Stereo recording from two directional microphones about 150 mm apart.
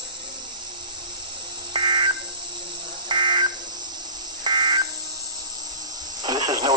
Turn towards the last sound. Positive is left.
turn(degrees=-25)  # may be behind; listen again after turning